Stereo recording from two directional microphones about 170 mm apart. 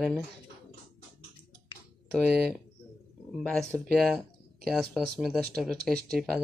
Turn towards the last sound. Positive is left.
turn(degrees=0)  # may be behind; listen again after turning